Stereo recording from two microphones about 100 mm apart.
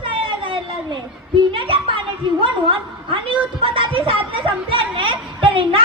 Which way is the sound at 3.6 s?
55° right (ahead or behind).